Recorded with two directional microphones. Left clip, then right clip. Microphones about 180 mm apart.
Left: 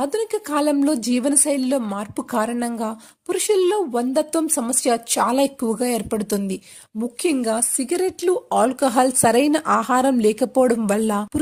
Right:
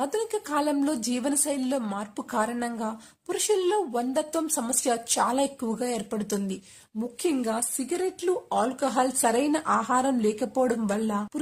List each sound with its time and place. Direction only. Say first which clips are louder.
0.0 s speech: left 6 dB; 30° left (ahead or behind)